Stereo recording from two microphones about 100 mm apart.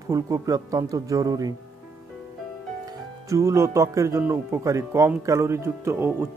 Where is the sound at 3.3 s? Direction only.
30° right (ahead or behind).